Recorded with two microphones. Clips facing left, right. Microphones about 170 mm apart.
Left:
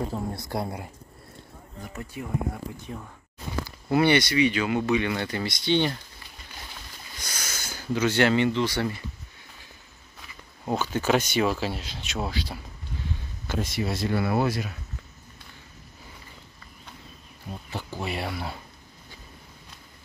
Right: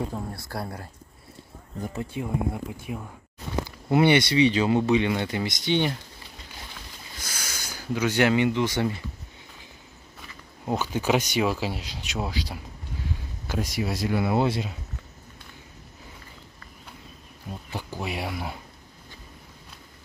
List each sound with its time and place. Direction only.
0.3 s speech: 20° left (ahead or behind)
2.0 s speech: 20° right (ahead or behind)
7.2 s speech: 5° right (ahead or behind)
10.6 s speech: 15° right (ahead or behind)
18.0 s speech: 10° right (ahead or behind)